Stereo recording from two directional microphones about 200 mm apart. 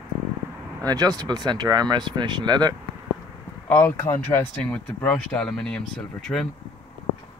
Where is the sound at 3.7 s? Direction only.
10° left (ahead or behind).